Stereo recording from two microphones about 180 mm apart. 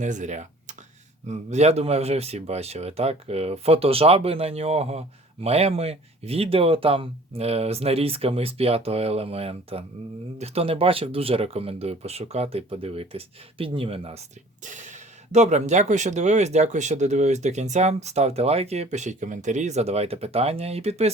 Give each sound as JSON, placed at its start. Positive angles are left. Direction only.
{"t": 0.0, "sound": "speech", "side_deg": -40}